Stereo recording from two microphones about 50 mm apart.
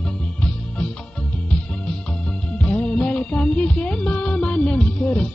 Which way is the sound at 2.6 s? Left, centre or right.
Left.